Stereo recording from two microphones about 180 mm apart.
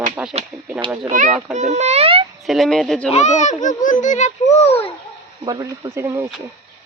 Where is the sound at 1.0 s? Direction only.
45° right (ahead or behind).